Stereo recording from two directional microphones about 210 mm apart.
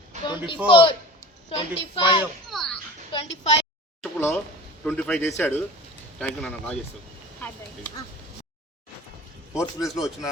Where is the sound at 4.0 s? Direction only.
10° left (ahead or behind).